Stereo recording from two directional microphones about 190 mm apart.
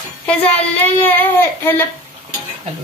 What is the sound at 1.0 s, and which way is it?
Speech, 10° left (ahead or behind).